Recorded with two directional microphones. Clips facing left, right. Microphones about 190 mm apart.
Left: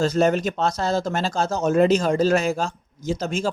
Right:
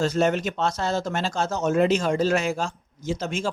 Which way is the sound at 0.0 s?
35° left (ahead or behind).